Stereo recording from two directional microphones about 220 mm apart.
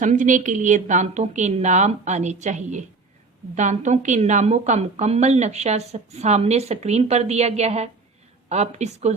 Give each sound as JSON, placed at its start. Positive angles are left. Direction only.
{"t": 0.0, "sound": "a woman's voice", "side_deg": -35}